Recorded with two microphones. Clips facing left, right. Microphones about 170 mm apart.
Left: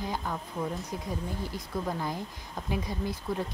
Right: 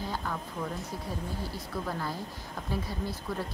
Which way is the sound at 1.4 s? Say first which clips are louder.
Left 2 dB; 15° left (ahead or behind).